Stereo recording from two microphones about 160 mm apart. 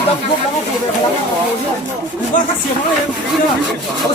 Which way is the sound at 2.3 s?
55° left (ahead or behind).